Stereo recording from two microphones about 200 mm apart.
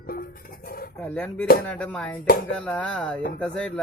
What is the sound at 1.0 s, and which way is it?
Speech, 10° left (ahead or behind).